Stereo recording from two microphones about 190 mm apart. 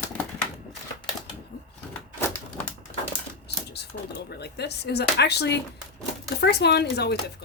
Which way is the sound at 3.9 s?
70° left (ahead or behind).